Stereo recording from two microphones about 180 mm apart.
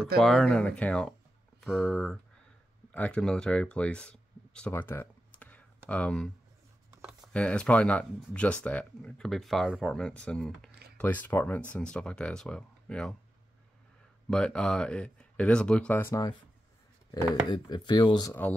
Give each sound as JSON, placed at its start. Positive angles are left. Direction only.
{"t": 0.2, "sound": "speech", "side_deg": 0}
{"t": 7.0, "sound": "a sound", "side_deg": -5}
{"t": 7.3, "sound": "speech", "side_deg": 5}
{"t": 14.3, "sound": "speech", "side_deg": 5}